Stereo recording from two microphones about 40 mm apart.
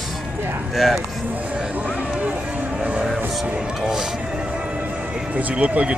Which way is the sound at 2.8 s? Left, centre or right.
Right.